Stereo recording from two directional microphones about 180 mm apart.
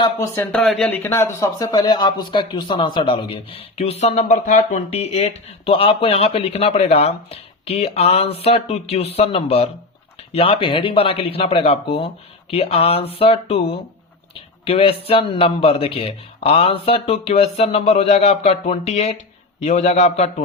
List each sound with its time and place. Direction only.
0.5 s speech: 5° left (ahead or behind); by 20.3 s 40° left (ahead or behind)